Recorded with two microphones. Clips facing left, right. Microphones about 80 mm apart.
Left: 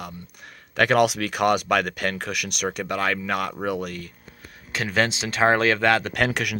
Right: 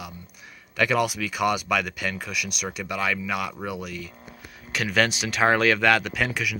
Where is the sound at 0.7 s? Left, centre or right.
Left.